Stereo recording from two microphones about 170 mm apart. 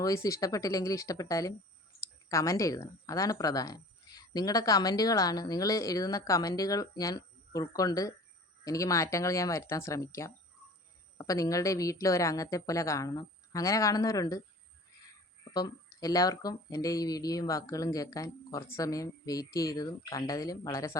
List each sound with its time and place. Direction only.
0.0 s a woman's voice: 20° left (ahead or behind)
15.5 s a woman's voice: 20° left (ahead or behind)